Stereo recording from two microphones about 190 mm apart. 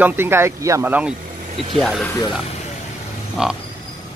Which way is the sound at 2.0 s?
20° left (ahead or behind).